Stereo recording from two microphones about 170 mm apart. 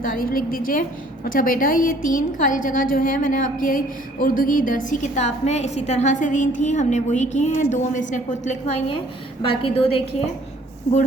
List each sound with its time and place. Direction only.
0.0 s a woman's voice: 55° left (ahead or behind)
9.4 s a woman's voice: 30° left (ahead or behind)